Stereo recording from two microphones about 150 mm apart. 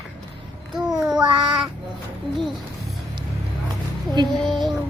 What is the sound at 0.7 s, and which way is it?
Babbling, centre (ahead or behind).